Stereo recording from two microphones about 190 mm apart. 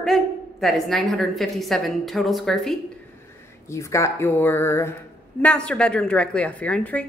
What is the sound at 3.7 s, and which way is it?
A woman's voice, 15° left (ahead or behind).